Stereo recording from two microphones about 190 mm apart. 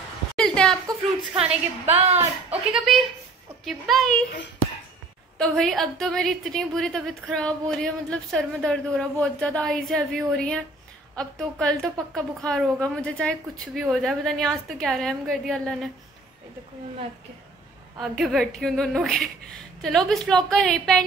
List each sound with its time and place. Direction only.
0.4 s a sound: 5° left (ahead or behind)
1.9 s a woman's voice: 35° right (ahead or behind)
2.7 s a woman's voice: centre (ahead or behind)
5.4 s a woman's voice: centre (ahead or behind)
17.9 s a woman's voice: centre (ahead or behind)